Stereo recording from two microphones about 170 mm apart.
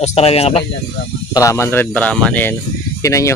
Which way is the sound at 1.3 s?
20° left (ahead or behind).